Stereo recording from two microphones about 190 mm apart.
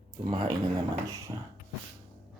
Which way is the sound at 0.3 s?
25° right (ahead or behind).